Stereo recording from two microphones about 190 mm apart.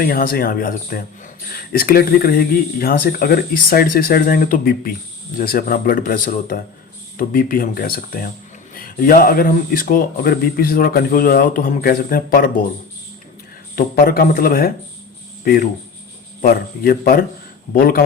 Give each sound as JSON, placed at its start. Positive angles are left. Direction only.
{"t": 0.0, "sound": "speech", "side_deg": 50}
{"t": 13.7, "sound": "speech", "side_deg": 50}